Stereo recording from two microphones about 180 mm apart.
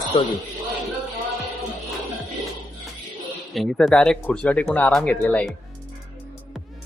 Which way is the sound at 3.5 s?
Centre (ahead or behind).